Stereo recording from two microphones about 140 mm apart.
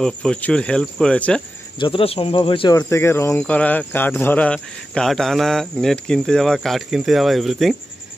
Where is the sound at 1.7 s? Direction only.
40° left (ahead or behind).